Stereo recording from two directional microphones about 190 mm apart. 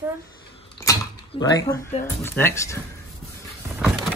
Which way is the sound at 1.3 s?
30° left (ahead or behind).